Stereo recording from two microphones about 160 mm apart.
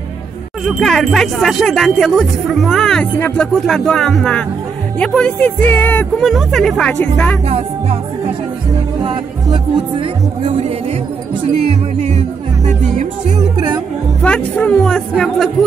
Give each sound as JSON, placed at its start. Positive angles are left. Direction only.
{"t": 0.7, "sound": "speech", "side_deg": 0}
{"t": 7.4, "sound": "speech", "side_deg": -40}
{"t": 9.9, "sound": "speech", "side_deg": -35}
{"t": 12.0, "sound": "speech", "side_deg": -45}
{"t": 14.2, "sound": "speech", "side_deg": 10}